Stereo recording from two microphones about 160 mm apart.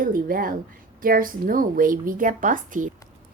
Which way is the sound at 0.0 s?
60° right (ahead or behind).